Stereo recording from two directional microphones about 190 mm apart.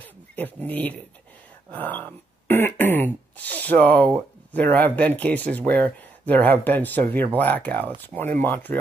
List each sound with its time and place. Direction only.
0.4 s speech: 10° left (ahead or behind)